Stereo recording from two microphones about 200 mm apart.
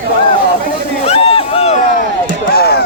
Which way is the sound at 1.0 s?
30° left (ahead or behind).